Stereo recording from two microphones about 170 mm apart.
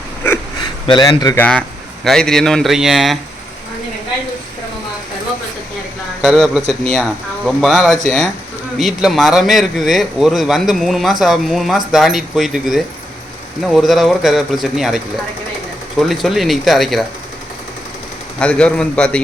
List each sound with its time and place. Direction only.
0.9 s speech: 25° left (ahead or behind)
1.4 s speech: 5° left (ahead or behind)
6.2 s speech: centre (ahead or behind)
6.6 s speech: 40° right (ahead or behind)
6.9 s speech: centre (ahead or behind)
18.3 s speech: 5° left (ahead or behind)